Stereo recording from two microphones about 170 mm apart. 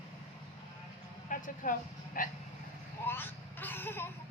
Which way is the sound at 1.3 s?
50° left (ahead or behind).